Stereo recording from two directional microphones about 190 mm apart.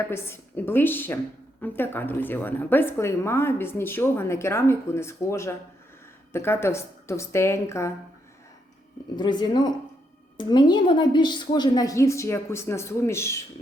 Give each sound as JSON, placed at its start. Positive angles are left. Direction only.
{"t": 0.0, "sound": "a woman's voice", "side_deg": 15}
{"t": 9.1, "sound": "a woman's voice", "side_deg": 25}